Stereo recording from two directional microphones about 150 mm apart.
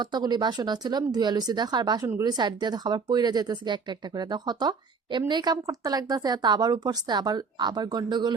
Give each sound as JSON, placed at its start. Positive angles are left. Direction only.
{"t": 0.0, "sound": "a woman's voice", "side_deg": -30}